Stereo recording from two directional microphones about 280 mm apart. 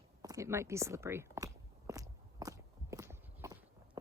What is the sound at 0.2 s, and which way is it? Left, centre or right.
Biting, centre.